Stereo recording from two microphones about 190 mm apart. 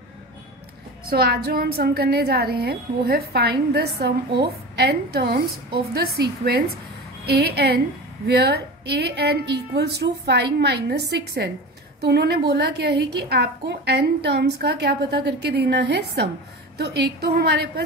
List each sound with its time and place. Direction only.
1.1 s a woman's voice: 55° right (ahead or behind)